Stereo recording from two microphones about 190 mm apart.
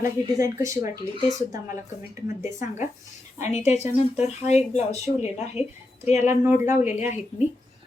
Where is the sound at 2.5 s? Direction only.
15° right (ahead or behind).